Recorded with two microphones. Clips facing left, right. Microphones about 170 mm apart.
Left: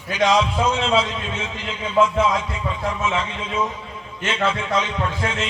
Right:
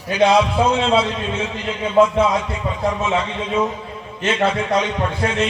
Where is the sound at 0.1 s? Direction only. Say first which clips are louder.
Right 4 dB; 35° right (ahead or behind).